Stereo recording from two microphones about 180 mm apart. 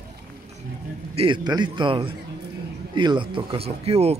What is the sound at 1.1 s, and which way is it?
A man's voice, 25° right (ahead or behind).